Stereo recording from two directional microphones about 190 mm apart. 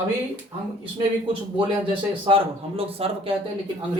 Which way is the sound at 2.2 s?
30° right (ahead or behind).